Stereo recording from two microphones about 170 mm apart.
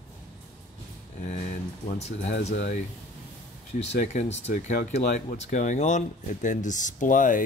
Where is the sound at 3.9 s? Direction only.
45° left (ahead or behind).